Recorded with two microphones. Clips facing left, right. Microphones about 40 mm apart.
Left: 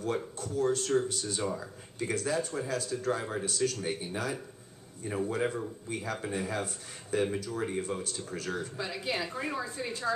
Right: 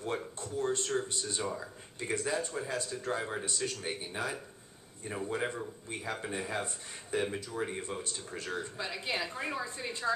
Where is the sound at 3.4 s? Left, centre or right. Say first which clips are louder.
Left 5 dB; centre.